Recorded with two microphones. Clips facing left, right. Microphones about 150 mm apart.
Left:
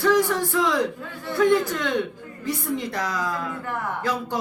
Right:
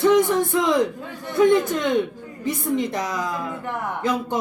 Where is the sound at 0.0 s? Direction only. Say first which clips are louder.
Right 3 dB; 20° right (ahead or behind).